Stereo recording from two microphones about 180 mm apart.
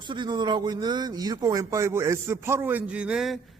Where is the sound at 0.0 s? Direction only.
25° right (ahead or behind).